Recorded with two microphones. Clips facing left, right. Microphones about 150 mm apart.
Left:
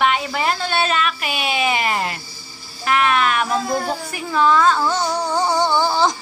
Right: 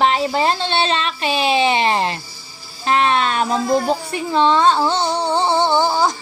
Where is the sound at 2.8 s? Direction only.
30° right (ahead or behind); by 6.1 s 10° right (ahead or behind).